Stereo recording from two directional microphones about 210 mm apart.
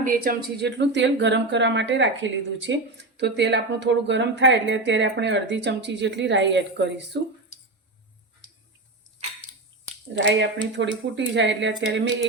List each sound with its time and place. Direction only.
0.0 s speech: 40° right (ahead or behind)
10.2 s speech: 60° right (ahead or behind)